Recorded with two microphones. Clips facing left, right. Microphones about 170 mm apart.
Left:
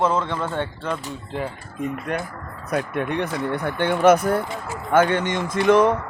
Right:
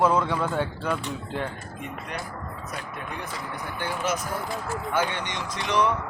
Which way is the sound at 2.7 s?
70° left (ahead or behind).